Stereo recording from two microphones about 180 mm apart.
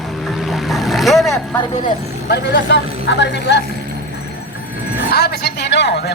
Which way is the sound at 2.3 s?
80° left.